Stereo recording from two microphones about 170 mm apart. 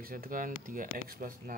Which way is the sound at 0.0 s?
55° right (ahead or behind).